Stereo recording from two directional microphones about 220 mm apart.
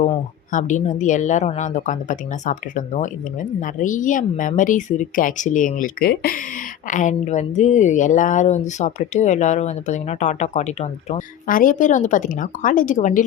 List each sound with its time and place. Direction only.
0.5 s a woman's voice: 35° left (ahead or behind)